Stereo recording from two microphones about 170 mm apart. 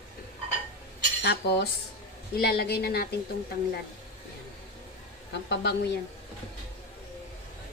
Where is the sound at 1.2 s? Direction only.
75° left (ahead or behind).